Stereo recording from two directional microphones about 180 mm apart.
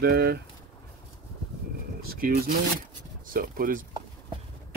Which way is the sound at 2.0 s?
55° right (ahead or behind).